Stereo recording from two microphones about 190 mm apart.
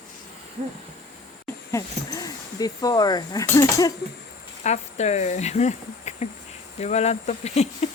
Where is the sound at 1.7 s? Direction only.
20° left (ahead or behind).